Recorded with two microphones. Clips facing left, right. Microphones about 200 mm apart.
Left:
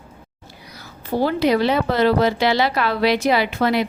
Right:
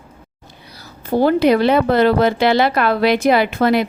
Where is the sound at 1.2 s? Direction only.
55° right (ahead or behind).